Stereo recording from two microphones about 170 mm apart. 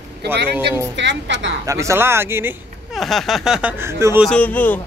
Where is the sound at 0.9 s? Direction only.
90° right.